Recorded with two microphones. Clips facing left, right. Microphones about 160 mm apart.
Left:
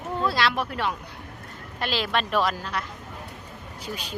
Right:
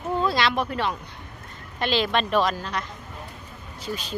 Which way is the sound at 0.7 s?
10° left (ahead or behind).